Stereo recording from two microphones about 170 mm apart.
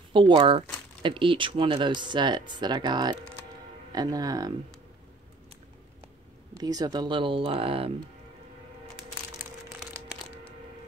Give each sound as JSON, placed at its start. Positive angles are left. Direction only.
{"t": 0.1, "sound": "speech", "side_deg": -30}
{"t": 6.6, "sound": "speech", "side_deg": -20}
{"t": 9.4, "sound": "a sound", "side_deg": -10}